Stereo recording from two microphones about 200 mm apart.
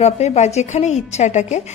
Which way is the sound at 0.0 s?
35° left (ahead or behind).